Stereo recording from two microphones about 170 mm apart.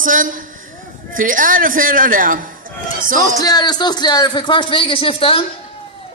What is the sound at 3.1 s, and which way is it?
A man's voice, 20° left (ahead or behind).